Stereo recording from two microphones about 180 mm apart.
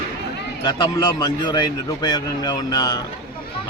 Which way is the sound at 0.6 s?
25° left (ahead or behind).